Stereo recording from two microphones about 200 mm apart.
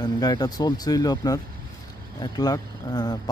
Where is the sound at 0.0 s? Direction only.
20° left (ahead or behind).